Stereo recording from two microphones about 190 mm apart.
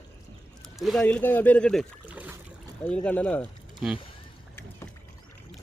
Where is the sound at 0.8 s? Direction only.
Centre (ahead or behind).